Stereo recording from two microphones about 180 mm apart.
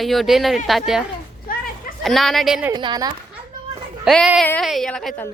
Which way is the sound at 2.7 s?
25° right (ahead or behind).